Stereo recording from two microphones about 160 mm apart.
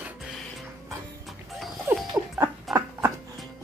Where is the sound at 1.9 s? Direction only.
15° right (ahead or behind).